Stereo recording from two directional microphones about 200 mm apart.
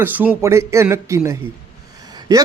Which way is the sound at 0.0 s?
10° right (ahead or behind).